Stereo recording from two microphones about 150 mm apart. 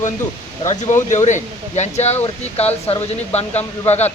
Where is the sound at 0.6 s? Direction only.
50° left (ahead or behind).